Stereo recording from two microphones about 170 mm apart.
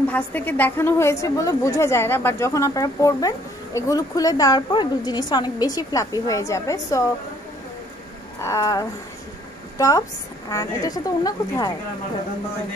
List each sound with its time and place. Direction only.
0.1 s a woman's voice: 10° left (ahead or behind)
8.4 s a sound: 15° left (ahead or behind)
9.8 s a woman's voice: 20° left (ahead or behind)